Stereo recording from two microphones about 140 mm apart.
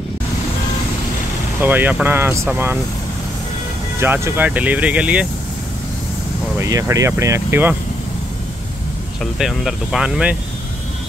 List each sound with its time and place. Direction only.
1.6 s speech: 15° right (ahead or behind)
4.0 s speech: 15° right (ahead or behind)
6.6 s speech: 25° right (ahead or behind)
9.2 s speech: centre (ahead or behind)